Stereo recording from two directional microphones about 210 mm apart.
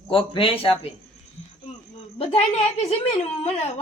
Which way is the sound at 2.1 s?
30° left (ahead or behind).